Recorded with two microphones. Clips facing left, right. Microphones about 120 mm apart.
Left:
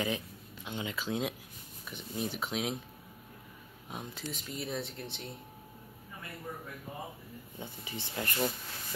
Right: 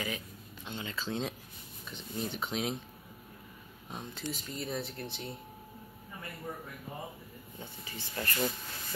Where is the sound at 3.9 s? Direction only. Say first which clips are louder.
Right 1 dB; 10° left (ahead or behind).